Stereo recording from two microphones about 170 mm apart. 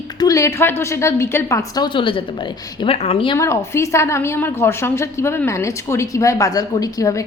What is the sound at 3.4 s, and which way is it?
A woman's voice, 15° left (ahead or behind).